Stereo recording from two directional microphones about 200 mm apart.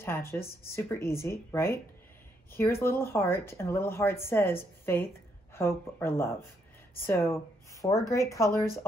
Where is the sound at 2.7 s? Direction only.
50° left (ahead or behind).